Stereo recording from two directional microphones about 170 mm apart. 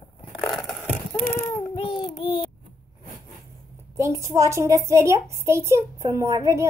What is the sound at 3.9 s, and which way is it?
A child's voice, 15° right (ahead or behind).